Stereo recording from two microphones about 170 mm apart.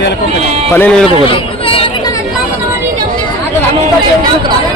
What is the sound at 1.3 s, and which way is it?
Chatter, 30° left (ahead or behind).